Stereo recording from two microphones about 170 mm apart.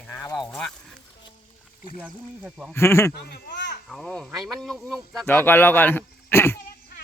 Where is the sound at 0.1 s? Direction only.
15° left (ahead or behind).